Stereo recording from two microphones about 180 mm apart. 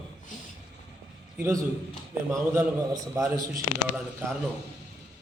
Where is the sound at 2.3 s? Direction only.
15° right (ahead or behind).